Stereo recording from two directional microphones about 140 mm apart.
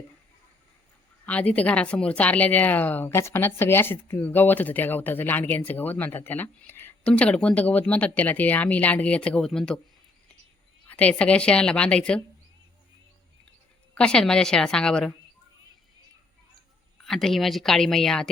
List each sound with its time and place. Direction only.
1.2 s speech: 10° left (ahead or behind)
10.8 s speech: 10° left (ahead or behind)
13.9 s speech: 5° left (ahead or behind)
17.0 s speech: centre (ahead or behind)